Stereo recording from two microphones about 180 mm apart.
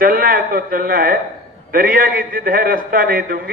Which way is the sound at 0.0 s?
55° right (ahead or behind).